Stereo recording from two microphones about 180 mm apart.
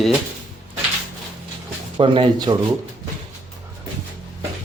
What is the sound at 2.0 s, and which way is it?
Speech, 25° right (ahead or behind).